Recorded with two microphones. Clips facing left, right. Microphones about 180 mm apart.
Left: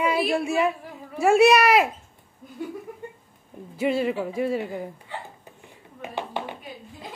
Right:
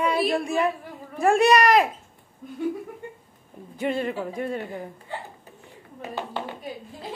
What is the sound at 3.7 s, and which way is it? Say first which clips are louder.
Speech: left 3 dB; 5° left (ahead or behind).